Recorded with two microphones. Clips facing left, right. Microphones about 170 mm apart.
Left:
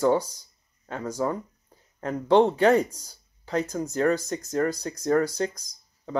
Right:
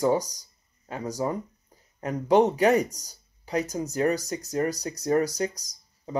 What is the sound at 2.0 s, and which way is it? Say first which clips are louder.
Speech: left 1 dB; 10° right (ahead or behind).